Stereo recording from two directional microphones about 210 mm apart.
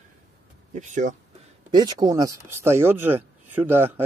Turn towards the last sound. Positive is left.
turn(degrees=-10)  # may be behind; listen again after turning